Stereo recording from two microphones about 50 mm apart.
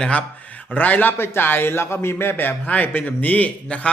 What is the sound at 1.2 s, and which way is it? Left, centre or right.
Speech, left.